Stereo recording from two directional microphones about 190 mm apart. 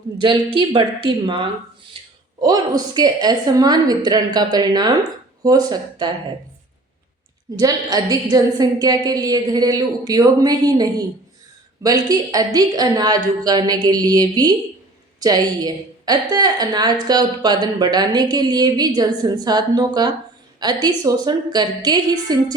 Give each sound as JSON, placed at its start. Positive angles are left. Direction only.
{"t": 0.2, "sound": "a woman's voice", "side_deg": -25}
{"t": 2.0, "sound": "a sound", "side_deg": -30}
{"t": 2.4, "sound": "a woman's voice", "side_deg": -20}
{"t": 7.6, "sound": "a woman's voice", "side_deg": -20}